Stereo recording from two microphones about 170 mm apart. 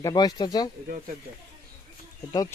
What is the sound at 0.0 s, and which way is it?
Speech, 20° left (ahead or behind).